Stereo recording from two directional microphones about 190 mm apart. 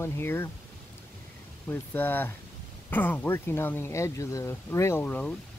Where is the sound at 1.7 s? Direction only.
10° left (ahead or behind).